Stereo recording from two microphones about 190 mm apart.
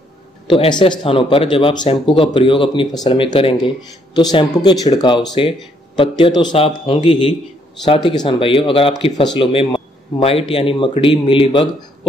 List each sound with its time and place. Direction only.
0.5 s speech: 25° left (ahead or behind)